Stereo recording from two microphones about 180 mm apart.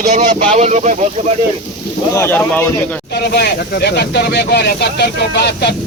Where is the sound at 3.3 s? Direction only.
65° left (ahead or behind).